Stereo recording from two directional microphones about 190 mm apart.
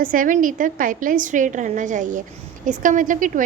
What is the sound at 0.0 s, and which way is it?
A woman's voice, 45° right (ahead or behind).